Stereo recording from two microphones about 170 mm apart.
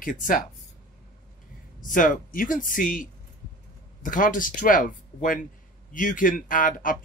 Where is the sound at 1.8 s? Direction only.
50° left (ahead or behind).